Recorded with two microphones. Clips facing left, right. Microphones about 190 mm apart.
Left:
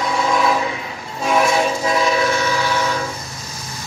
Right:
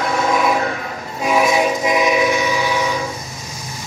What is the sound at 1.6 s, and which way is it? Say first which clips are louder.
Train: right 2 dB; 15° right (ahead or behind).